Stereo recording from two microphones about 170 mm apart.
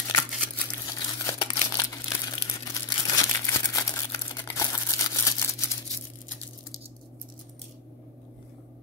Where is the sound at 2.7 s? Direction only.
15° left (ahead or behind).